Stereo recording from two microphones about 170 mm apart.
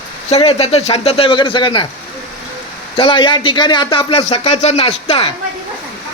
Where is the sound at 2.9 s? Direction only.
30° left (ahead or behind).